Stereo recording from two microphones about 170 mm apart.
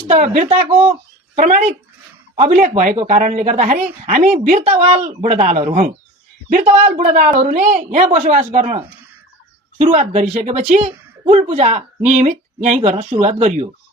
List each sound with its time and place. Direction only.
0.1 s speech: 45° right (ahead or behind)
1.4 s speech: 45° right (ahead or behind)
9.8 s speech: 45° right (ahead or behind)